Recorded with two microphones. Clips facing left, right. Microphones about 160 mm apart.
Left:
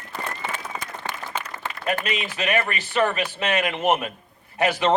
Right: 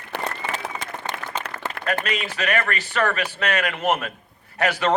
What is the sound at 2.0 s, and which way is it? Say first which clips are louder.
Speech: right 1 dB; 40° right (ahead or behind).